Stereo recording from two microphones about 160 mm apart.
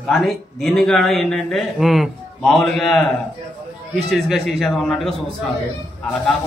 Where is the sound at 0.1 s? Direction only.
Centre (ahead or behind).